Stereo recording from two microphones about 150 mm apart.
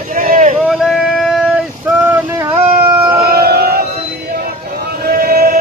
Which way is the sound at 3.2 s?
90° right.